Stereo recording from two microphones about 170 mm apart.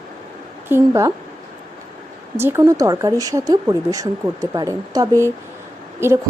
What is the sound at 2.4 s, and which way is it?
Speech, 15° right (ahead or behind).